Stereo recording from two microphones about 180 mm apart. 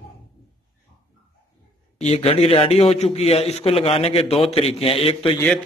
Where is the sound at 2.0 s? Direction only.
35° left (ahead or behind).